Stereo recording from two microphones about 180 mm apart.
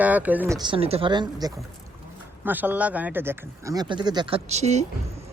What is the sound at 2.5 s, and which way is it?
Speech, 10° right (ahead or behind).